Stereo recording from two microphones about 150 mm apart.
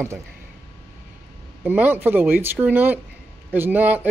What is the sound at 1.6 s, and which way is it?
Speech, 10° right (ahead or behind).